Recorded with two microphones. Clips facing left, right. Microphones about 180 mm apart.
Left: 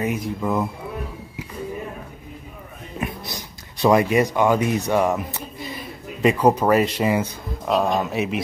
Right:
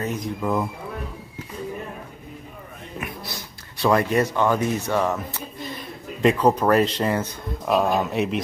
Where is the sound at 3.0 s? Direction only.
25° left (ahead or behind).